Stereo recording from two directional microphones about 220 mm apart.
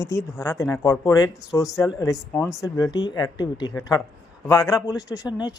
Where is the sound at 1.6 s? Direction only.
Centre (ahead or behind).